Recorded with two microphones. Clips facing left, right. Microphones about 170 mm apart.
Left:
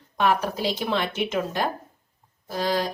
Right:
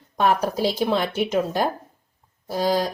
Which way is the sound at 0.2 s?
40° right (ahead or behind).